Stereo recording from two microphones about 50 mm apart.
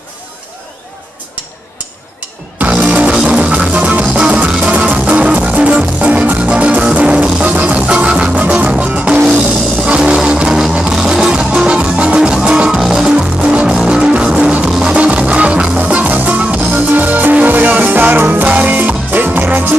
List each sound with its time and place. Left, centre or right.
2.7 s music: right